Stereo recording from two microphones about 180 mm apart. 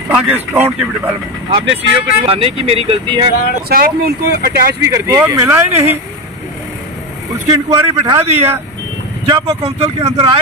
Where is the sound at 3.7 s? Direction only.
60° right (ahead or behind).